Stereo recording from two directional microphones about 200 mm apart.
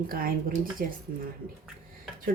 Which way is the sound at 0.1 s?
45° right (ahead or behind).